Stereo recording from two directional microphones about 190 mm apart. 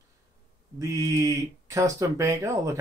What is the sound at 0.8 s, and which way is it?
Speech, 15° right (ahead or behind).